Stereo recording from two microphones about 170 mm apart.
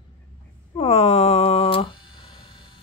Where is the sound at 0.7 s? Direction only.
40° left (ahead or behind).